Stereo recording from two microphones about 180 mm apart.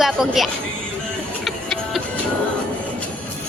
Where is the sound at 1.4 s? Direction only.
Centre (ahead or behind).